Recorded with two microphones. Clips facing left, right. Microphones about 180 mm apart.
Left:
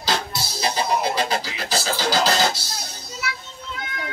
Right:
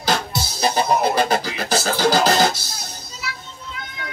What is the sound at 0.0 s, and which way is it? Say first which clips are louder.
Music: right 3 dB; 50° right (ahead or behind).